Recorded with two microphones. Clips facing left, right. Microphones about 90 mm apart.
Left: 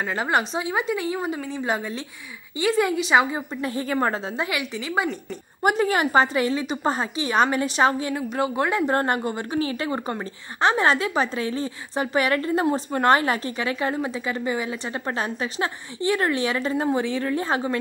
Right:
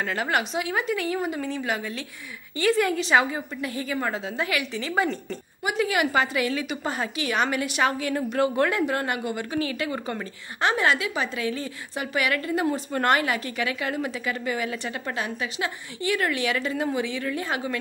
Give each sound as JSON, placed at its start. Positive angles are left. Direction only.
{"t": 0.0, "sound": "a woman's voice", "side_deg": 25}
{"t": 3.9, "sound": "a woman's voice", "side_deg": 40}
{"t": 4.4, "sound": "a woman's voice", "side_deg": 20}
{"t": 5.6, "sound": "a woman's voice", "side_deg": 45}
{"t": 8.1, "sound": "a woman's voice", "side_deg": 15}
{"t": 8.8, "sound": "a woman's voice", "side_deg": 40}
{"t": 15.1, "sound": "a woman's voice", "side_deg": 35}